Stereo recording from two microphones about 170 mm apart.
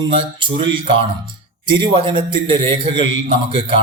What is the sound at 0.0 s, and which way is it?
A man's voice, 30° right (ahead or behind).